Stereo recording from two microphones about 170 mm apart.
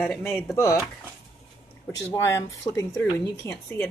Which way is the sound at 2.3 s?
15° left (ahead or behind).